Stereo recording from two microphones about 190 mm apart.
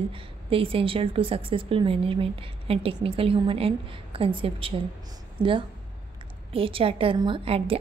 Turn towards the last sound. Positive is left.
turn(degrees=-30)  # may be behind; listen again after turning